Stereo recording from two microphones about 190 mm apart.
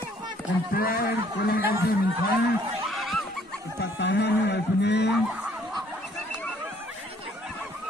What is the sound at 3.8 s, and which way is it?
Speech, 65° left (ahead or behind).